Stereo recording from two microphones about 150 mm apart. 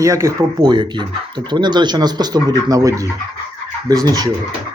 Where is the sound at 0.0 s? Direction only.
20° right (ahead or behind).